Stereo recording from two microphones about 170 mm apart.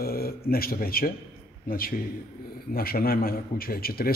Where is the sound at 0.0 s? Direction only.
60° left (ahead or behind).